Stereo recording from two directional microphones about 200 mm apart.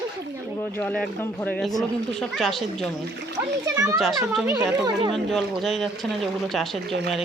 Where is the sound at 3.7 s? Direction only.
15° right (ahead or behind).